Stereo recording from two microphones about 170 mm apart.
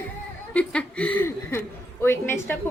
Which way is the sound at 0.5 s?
5° left (ahead or behind).